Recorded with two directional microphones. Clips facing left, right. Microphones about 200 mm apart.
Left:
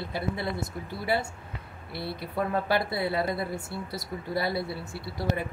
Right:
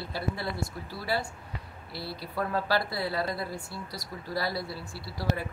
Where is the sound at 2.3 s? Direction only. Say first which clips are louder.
Left 2 dB; 20° left (ahead or behind).